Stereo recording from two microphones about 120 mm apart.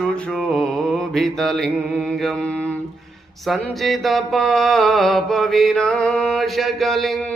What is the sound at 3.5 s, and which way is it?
Mantra, centre (ahead or behind).